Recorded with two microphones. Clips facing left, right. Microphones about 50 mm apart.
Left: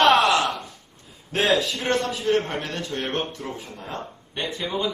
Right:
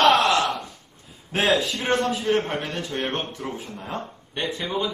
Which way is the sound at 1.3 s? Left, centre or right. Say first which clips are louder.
Even; centre.